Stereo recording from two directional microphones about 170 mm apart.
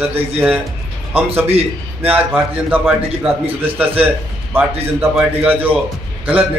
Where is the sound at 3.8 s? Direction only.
10° right (ahead or behind).